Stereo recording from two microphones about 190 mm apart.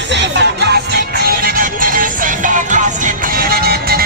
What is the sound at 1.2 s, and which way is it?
Music, 50° right (ahead or behind).